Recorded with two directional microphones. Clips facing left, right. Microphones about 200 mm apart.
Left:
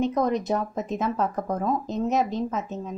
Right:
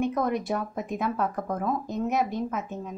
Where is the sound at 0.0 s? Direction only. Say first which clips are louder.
Left 3 dB; 20° left (ahead or behind).